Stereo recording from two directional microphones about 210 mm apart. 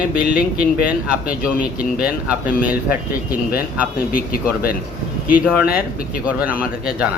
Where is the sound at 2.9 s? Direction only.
45° left (ahead or behind).